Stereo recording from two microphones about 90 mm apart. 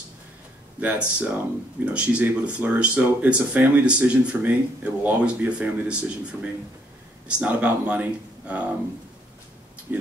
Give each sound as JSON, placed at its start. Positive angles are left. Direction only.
{"t": 0.7, "sound": "speech", "side_deg": -15}
{"t": 9.9, "sound": "speech", "side_deg": -20}